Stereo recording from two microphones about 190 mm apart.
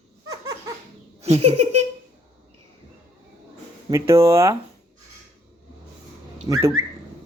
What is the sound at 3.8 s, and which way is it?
Speech, 15° right (ahead or behind).